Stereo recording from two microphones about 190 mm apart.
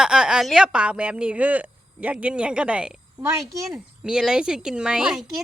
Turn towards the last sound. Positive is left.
turn(degrees=0)  # may be behind; listen again after turning